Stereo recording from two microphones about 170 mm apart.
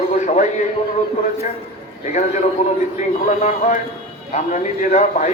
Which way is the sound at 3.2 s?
45° left (ahead or behind).